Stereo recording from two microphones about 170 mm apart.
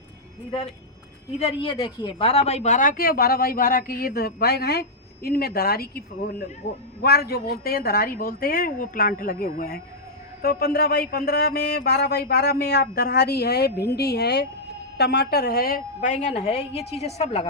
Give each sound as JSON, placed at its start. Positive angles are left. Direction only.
{"t": 1.4, "sound": "a woman's voice", "side_deg": 35}